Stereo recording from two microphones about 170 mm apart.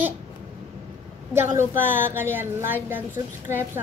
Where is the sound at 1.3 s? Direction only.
15° right (ahead or behind).